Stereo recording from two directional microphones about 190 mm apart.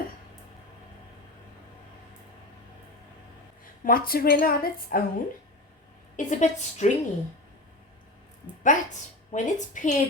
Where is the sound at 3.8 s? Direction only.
50° left (ahead or behind).